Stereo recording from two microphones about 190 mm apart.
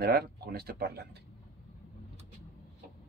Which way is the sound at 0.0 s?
55° right (ahead or behind).